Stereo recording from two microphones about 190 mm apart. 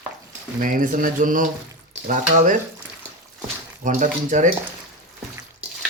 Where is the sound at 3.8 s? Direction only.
40° right (ahead or behind).